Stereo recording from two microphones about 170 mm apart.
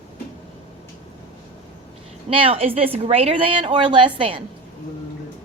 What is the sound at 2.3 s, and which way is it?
A woman's voice, 35° right (ahead or behind).